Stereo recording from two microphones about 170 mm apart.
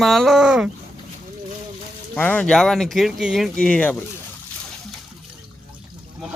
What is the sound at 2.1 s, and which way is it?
Speech, 10° left (ahead or behind).